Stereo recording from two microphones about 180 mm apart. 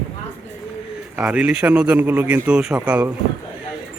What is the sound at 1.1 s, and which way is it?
Speech, 5° right (ahead or behind).